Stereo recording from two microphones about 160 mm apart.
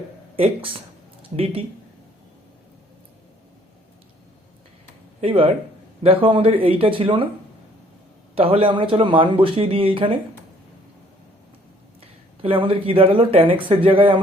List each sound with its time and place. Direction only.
0.3 s speech: 35° right (ahead or behind)
5.2 s speech: 35° right (ahead or behind)
8.4 s speech: 35° right (ahead or behind)
11.9 s speech: 35° right (ahead or behind)